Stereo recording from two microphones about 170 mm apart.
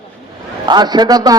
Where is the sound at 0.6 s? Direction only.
25° right (ahead or behind).